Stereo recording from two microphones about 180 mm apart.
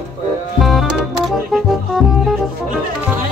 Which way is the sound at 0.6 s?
Centre (ahead or behind).